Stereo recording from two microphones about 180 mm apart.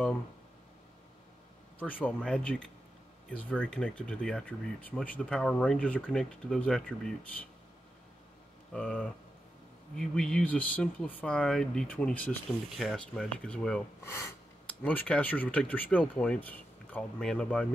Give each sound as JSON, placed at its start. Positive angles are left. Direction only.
{"t": 1.8, "sound": "speech", "side_deg": 10}
{"t": 8.7, "sound": "speech", "side_deg": 5}